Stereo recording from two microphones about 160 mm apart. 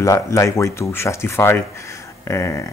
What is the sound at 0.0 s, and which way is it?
Speech, 20° left (ahead or behind).